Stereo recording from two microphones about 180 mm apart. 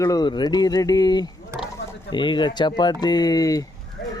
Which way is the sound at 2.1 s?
25° left (ahead or behind).